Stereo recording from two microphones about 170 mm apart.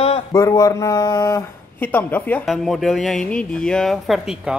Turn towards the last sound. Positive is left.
turn(degrees=0)  # may be behind; listen again after turning